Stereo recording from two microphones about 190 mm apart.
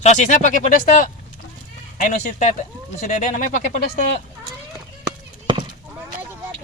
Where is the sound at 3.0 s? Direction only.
40° left (ahead or behind).